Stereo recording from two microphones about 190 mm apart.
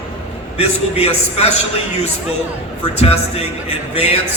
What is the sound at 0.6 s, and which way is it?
Speech, 35° left (ahead or behind).